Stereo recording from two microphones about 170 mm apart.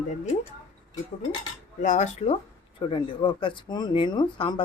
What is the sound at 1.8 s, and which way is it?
Speech, 45° left (ahead or behind).